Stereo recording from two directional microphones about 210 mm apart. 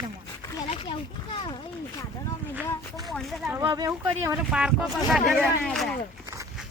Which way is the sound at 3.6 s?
20° right (ahead or behind).